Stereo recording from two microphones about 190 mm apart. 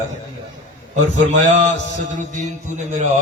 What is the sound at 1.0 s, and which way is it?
A man's voice, 40° right (ahead or behind).